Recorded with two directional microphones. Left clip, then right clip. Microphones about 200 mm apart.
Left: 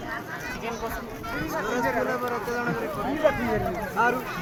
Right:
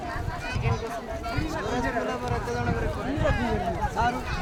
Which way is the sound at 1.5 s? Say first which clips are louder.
Left 4 dB; 10° left (ahead or behind).